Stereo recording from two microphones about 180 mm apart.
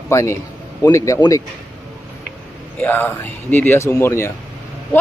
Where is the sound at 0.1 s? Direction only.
15° left (ahead or behind).